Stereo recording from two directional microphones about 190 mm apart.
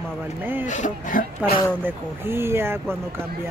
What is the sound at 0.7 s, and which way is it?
Speech, 40° left (ahead or behind).